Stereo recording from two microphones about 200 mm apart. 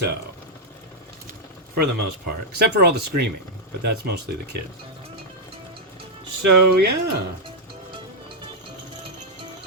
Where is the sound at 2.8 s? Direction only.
55° right (ahead or behind).